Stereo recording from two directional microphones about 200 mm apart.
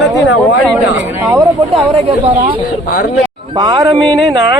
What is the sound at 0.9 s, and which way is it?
Speech, 15° right (ahead or behind).